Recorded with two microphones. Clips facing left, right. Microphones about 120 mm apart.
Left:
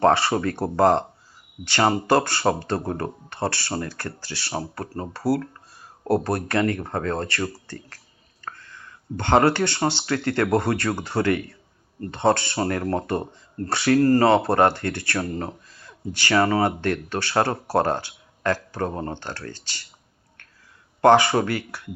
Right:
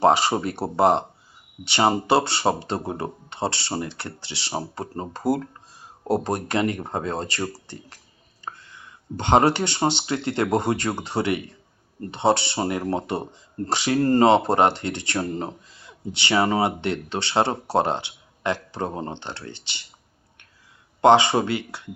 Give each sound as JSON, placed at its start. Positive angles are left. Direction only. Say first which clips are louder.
{"t": 0.0, "sound": "speech", "louder": "even", "side_deg": -15}
{"t": 21.0, "sound": "speech", "louder": "even", "side_deg": -20}